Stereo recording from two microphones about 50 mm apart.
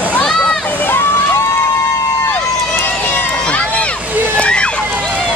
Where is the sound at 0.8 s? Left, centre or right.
Left.